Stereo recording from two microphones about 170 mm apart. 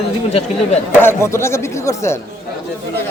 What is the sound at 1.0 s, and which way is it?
A man's voice, 15° left (ahead or behind).